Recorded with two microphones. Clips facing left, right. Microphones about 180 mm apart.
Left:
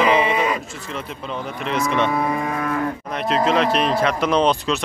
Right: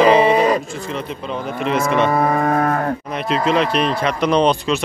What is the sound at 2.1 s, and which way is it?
Moo, 50° right (ahead or behind).